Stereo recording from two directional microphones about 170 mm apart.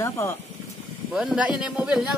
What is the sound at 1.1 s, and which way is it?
Speech, 5° right (ahead or behind).